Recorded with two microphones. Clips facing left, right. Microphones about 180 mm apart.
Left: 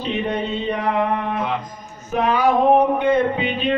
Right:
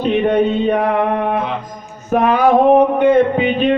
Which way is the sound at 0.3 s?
55° right (ahead or behind).